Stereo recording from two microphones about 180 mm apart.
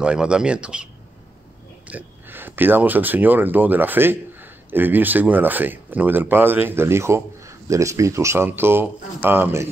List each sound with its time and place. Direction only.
0.0 s speech: 5° right (ahead or behind)
1.9 s speech: 10° right (ahead or behind)